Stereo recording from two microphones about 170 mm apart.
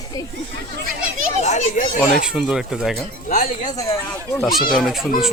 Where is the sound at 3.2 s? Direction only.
50° left (ahead or behind).